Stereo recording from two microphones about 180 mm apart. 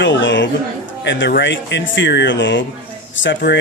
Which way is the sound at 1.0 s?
80° left.